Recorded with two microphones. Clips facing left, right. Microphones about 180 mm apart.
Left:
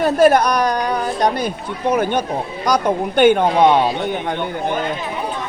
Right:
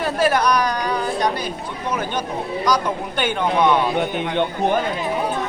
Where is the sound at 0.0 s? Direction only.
50° left (ahead or behind).